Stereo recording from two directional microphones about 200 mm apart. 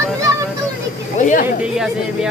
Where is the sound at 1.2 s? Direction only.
40° left (ahead or behind).